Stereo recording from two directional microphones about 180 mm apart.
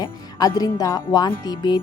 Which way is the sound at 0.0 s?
20° left (ahead or behind).